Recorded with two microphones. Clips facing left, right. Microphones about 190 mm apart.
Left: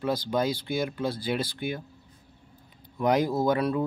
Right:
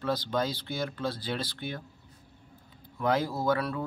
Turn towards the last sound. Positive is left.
turn(degrees=20)  # may be behind; listen again after turning